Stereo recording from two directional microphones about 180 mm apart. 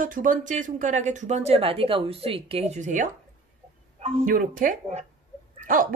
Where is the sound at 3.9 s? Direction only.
35° right (ahead or behind).